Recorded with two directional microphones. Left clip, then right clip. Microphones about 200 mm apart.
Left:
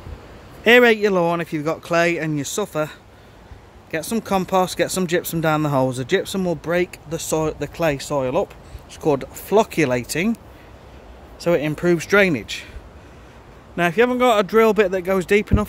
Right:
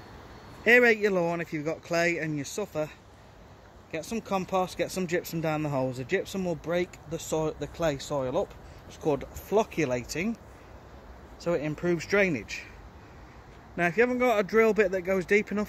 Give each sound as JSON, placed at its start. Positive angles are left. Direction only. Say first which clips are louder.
{"t": 0.7, "sound": "speech", "louder": "left 7 dB", "side_deg": 20}
{"t": 11.3, "sound": "speech", "louder": "left 10 dB", "side_deg": 25}
{"t": 13.7, "sound": "speech", "louder": "left 8 dB", "side_deg": 10}